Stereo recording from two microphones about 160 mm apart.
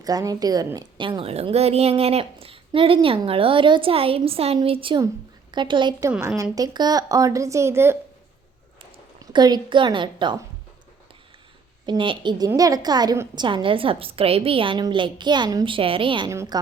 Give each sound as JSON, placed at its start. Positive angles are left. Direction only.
{"t": 0.0, "sound": "a woman's voice", "side_deg": -25}
{"t": 6.1, "sound": "a woman's voice", "side_deg": -15}
{"t": 9.3, "sound": "a woman's voice", "side_deg": -25}
{"t": 11.9, "sound": "a woman's voice", "side_deg": -30}
{"t": 16.3, "sound": "a woman's voice", "side_deg": -20}